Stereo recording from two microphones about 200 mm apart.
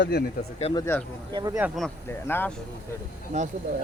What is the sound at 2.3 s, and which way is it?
Speech, 10° left (ahead or behind).